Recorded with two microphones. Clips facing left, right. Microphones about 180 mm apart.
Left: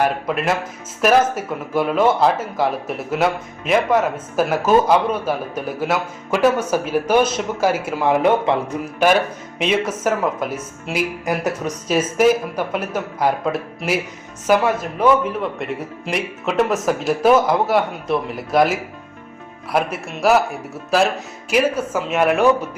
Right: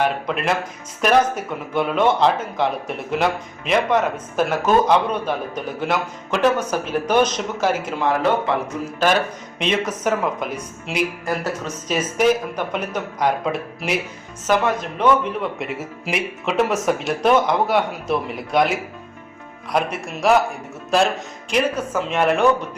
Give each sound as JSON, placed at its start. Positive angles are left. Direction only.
{"t": 0.0, "sound": "a man's voice", "side_deg": 5}
{"t": 9.6, "sound": "speech", "side_deg": 5}
{"t": 21.5, "sound": "speech", "side_deg": 5}